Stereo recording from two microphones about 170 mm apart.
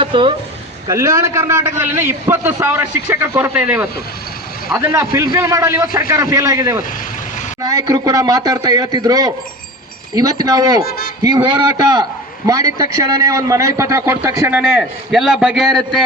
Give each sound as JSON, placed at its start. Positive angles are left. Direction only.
{"t": 0.0, "sound": "speech", "side_deg": -30}
{"t": 0.9, "sound": "a man's voice", "side_deg": -20}
{"t": 10.8, "sound": "a man's voice", "side_deg": 60}
{"t": 11.4, "sound": "a man's voice", "side_deg": -25}